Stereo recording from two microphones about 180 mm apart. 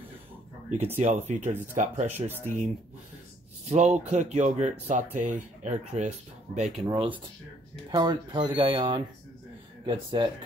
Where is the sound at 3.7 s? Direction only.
40° right (ahead or behind).